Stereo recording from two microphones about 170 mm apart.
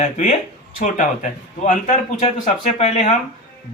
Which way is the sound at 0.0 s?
40° left (ahead or behind).